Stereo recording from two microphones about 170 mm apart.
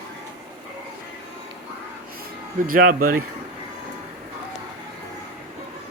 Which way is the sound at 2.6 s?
55° right (ahead or behind).